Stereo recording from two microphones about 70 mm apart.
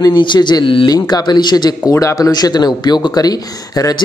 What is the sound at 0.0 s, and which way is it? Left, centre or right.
Speech, left.